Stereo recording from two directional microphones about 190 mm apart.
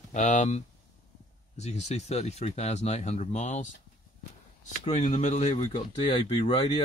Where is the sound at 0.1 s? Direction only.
40° left (ahead or behind).